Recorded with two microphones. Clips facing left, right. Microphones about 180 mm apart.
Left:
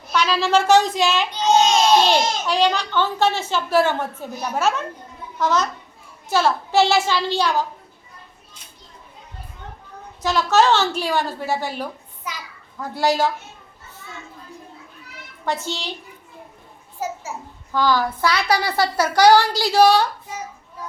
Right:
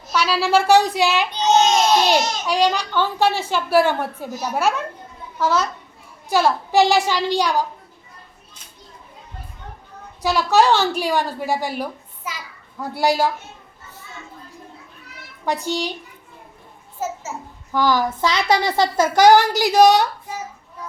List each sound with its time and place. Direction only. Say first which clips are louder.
0.1 s a child's voice: right 1 dB; 10° right (ahead or behind)
10.2 s a child's voice: right 1 dB; 10° right (ahead or behind)
15.4 s a child's voice: right 3 dB; 15° right (ahead or behind)
17.7 s speech: right 1 dB; 15° right (ahead or behind)